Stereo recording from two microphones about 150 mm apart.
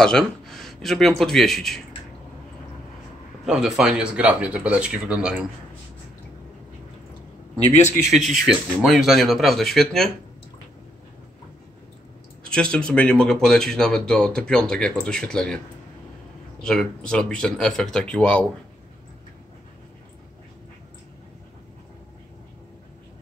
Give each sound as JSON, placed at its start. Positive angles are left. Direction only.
{"t": 0.0, "sound": "speech", "side_deg": 5}
{"t": 3.4, "sound": "speech", "side_deg": -5}
{"t": 8.1, "sound": "speech", "side_deg": -50}
{"t": 8.5, "sound": "speech", "side_deg": 0}
{"t": 12.4, "sound": "speech", "side_deg": 5}
{"t": 16.6, "sound": "speech", "side_deg": 5}